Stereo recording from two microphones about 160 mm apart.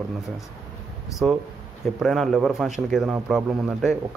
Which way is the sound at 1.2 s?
Centre (ahead or behind).